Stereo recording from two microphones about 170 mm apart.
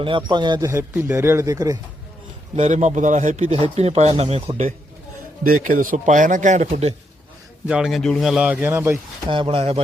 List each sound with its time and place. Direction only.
0.0 s a man's voice: 30° right (ahead or behind)
0.7 s speech: 15° right (ahead or behind)
2.6 s a man's voice: 45° right (ahead or behind)
5.4 s speech: 55° right (ahead or behind)
7.7 s a man's voice: centre (ahead or behind)
9.3 s a man's voice: 30° right (ahead or behind)